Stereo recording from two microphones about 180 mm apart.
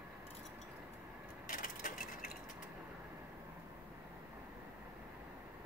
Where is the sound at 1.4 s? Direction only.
50° left (ahead or behind).